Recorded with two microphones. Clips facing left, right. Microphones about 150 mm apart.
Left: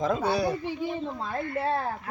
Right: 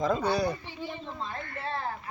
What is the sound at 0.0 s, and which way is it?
Speech, centre (ahead or behind).